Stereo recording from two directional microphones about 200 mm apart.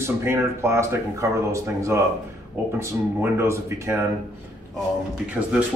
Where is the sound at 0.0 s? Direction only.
15° right (ahead or behind).